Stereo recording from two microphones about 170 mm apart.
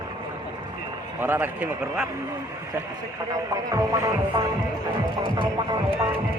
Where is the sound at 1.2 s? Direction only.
10° right (ahead or behind).